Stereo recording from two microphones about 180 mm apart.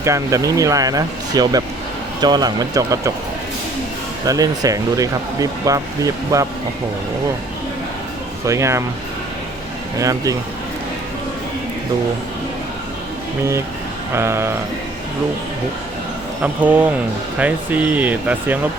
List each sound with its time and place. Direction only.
0.0 s speech: 15° right (ahead or behind)
4.3 s speech: 20° right (ahead or behind)
8.4 s speech: 15° right (ahead or behind)
10.0 s speech: 20° right (ahead or behind)
14.1 s speech: 15° right (ahead or behind)
16.4 s speech: 10° right (ahead or behind)